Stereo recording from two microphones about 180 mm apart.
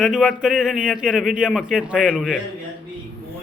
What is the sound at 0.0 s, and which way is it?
Speech, 5° right (ahead or behind).